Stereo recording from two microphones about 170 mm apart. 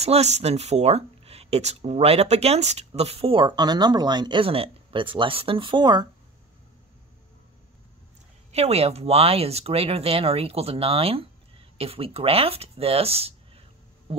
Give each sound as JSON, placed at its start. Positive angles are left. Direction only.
{"t": 0.0, "sound": "speech", "side_deg": -40}
{"t": 8.5, "sound": "speech", "side_deg": -40}